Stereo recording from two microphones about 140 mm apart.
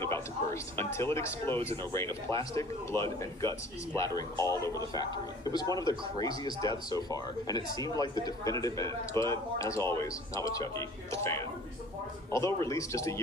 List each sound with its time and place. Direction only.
0.0 s speech: 20° left (ahead or behind)